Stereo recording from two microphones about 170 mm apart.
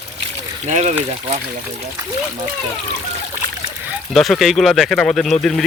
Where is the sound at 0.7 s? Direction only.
40° right (ahead or behind).